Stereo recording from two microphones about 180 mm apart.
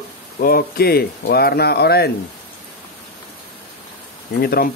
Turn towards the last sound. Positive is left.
turn(degrees=60)  # may be behind; listen again after turning